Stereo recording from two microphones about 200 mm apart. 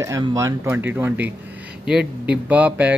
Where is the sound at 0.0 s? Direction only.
15° right (ahead or behind).